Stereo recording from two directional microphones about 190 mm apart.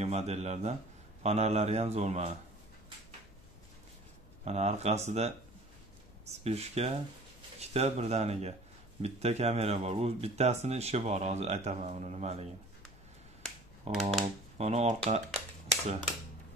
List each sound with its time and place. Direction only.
0.0 s speech: 35° right (ahead or behind)
4.5 s speech: 35° right (ahead or behind)
13.9 s speech: 35° right (ahead or behind)